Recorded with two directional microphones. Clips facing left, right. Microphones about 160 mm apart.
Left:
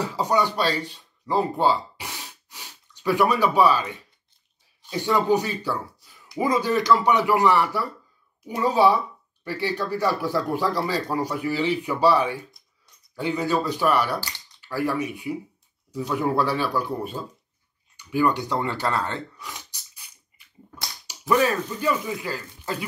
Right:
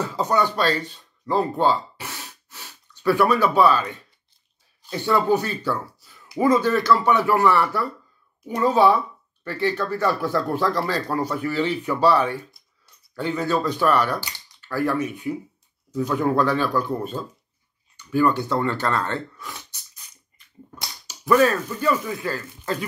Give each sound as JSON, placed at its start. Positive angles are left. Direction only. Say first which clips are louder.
{"t": 0.0, "sound": "speech", "louder": "right 1 dB", "side_deg": 15}
{"t": 5.9, "sound": "a sound", "louder": "right 2 dB", "side_deg": -5}
{"t": 6.4, "sound": "speech", "louder": "right 3 dB", "side_deg": 15}
{"t": 19.9, "sound": "dog", "louder": "right 1 dB", "side_deg": 10}
{"t": 21.1, "sound": "speech", "louder": "right 3 dB", "side_deg": 15}